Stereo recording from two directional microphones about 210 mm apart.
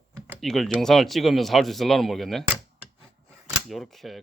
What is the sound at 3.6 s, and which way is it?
Speech, centre (ahead or behind).